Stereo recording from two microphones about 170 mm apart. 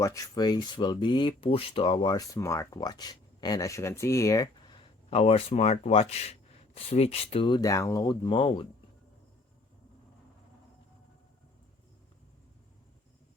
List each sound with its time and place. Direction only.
0.0 s speech: 20° left (ahead or behind)
5.1 s speech: 35° left (ahead or behind)